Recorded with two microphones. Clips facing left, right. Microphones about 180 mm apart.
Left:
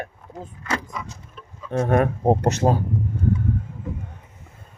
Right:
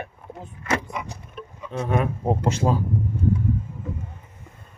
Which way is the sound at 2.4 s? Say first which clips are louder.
Left 3 dB; 70° left (ahead or behind).